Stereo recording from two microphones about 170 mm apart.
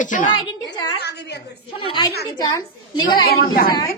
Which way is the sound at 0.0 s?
50° left (ahead or behind).